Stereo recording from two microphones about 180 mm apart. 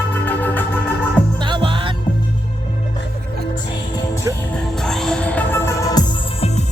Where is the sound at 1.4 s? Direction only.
25° right (ahead or behind).